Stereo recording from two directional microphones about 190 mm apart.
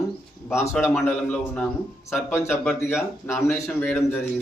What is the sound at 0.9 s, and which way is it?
A man's voice, 5° left (ahead or behind).